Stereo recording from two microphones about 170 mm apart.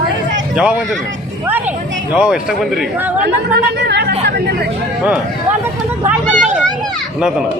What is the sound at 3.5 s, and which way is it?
Speech, 85° right.